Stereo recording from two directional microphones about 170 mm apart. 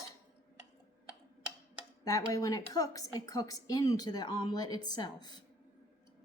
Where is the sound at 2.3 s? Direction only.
20° left (ahead or behind).